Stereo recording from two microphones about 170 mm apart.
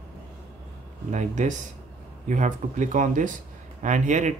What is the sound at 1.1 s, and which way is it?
Speech, 45° right (ahead or behind).